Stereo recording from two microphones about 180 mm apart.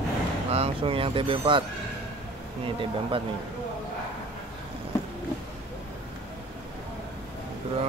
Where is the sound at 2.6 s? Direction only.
30° right (ahead or behind).